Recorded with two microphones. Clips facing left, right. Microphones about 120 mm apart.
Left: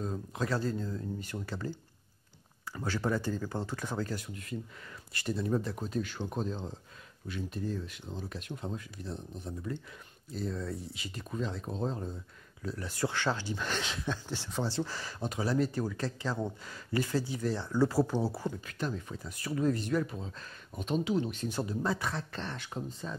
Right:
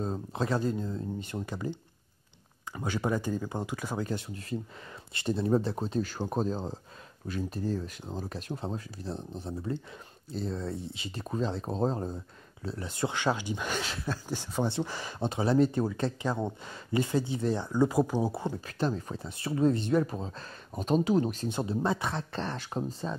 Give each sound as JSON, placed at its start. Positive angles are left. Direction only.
{"t": 0.0, "sound": "speech", "side_deg": -30}
{"t": 12.6, "sound": "speech", "side_deg": -25}
{"t": 14.6, "sound": "speech", "side_deg": -20}
{"t": 20.1, "sound": "speech", "side_deg": -40}
{"t": 21.5, "sound": "speech", "side_deg": -20}
{"t": 22.4, "sound": "speech", "side_deg": -35}